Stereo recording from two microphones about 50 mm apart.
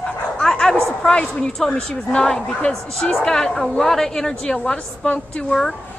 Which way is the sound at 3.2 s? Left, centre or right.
Centre.